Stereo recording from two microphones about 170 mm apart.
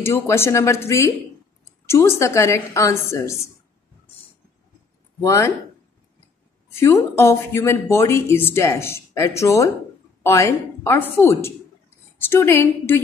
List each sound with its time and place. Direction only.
0.0 s speech: 15° left (ahead or behind)
5.2 s speech: 15° left (ahead or behind)
6.7 s speech: 15° left (ahead or behind)